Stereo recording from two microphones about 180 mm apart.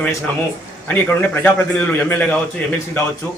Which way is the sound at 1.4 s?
10° left (ahead or behind).